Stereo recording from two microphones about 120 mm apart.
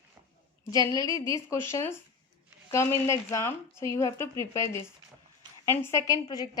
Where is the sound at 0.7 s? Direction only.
30° left (ahead or behind).